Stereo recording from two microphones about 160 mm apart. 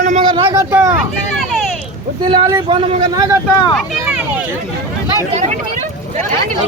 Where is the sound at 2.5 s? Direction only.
30° right (ahead or behind).